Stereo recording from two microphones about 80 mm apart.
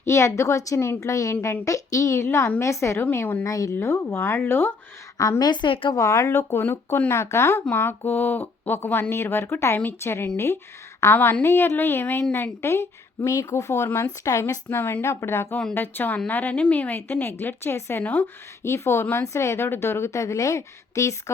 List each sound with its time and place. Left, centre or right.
0.0 s speech: left
3.4 s speech: left
3.8 s speech: left
5.4 s a woman's voice: left
6.0 s speech: left
18.0 s speech: centre
18.6 s speech: left